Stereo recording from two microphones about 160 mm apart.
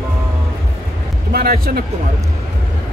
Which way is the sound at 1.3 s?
70° right (ahead or behind).